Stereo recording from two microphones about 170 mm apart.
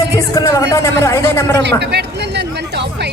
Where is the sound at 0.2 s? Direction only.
20° left (ahead or behind).